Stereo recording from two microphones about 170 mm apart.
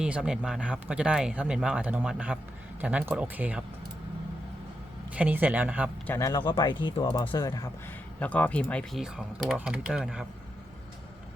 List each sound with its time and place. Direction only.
0.0 s speech: 5° right (ahead or behind)
5.1 s speech: 10° right (ahead or behind)
6.1 s speech: 15° left (ahead or behind)
6.4 s speech: 30° left (ahead or behind)
8.2 s speech: 10° left (ahead or behind)